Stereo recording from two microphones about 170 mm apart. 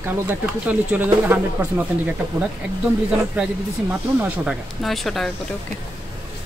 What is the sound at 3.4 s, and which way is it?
Speech, 5° right (ahead or behind).